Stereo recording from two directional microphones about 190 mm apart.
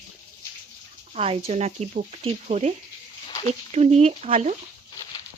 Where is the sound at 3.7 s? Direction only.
35° right (ahead or behind).